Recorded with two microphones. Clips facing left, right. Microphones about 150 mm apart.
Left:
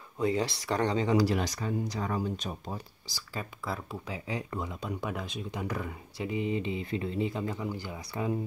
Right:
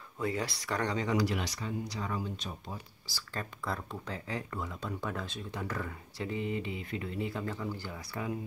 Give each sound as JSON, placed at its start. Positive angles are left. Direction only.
{"t": 0.2, "sound": "speech", "side_deg": 25}
{"t": 3.1, "sound": "speech", "side_deg": 15}